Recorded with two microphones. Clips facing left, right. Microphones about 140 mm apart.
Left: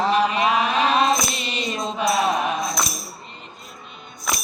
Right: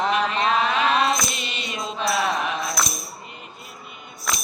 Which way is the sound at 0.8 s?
35° left (ahead or behind).